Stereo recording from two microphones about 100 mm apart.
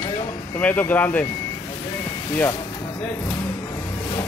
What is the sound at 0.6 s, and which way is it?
Speech, 15° left (ahead or behind).